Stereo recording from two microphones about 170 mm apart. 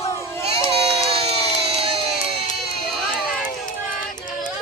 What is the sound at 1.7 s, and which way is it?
Crowd, 35° right (ahead or behind).